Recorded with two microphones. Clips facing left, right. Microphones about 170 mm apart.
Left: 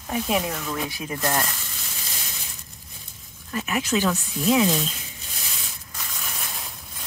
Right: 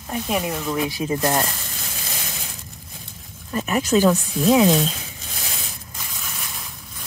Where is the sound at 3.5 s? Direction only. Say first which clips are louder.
Right 5 dB; 40° right (ahead or behind).